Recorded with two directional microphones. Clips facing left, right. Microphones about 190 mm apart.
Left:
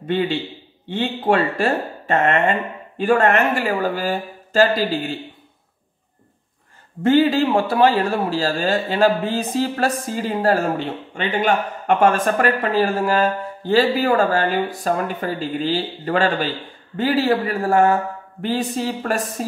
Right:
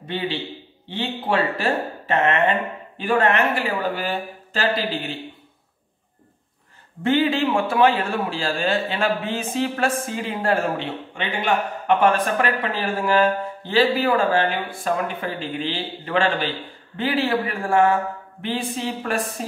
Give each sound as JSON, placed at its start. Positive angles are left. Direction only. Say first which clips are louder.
{"t": 0.8, "sound": "speech", "louder": "left 6 dB", "side_deg": 45}
{"t": 7.0, "sound": "a man's voice", "louder": "left 4 dB", "side_deg": 40}